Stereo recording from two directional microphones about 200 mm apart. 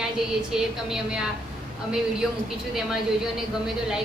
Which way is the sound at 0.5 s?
5° right (ahead or behind).